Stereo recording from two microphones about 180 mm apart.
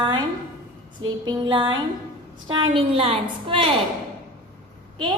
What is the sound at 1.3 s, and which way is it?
A woman's voice, 25° right (ahead or behind).